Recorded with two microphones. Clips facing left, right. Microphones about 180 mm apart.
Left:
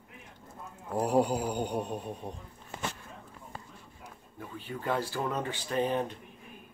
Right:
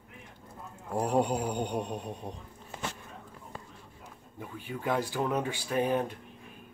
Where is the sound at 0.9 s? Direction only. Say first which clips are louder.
Left 1 dB; 5° left (ahead or behind).